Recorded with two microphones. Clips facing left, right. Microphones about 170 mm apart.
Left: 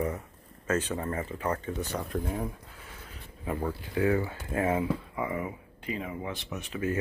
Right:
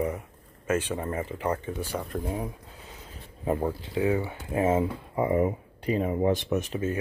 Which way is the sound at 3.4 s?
25° right (ahead or behind).